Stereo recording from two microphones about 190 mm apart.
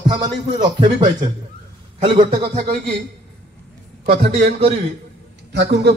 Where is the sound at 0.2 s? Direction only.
25° right (ahead or behind).